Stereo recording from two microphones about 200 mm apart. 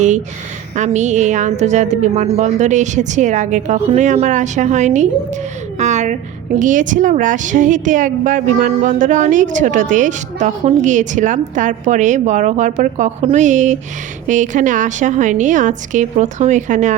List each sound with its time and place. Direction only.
0.8 s a woman's voice: 35° right (ahead or behind)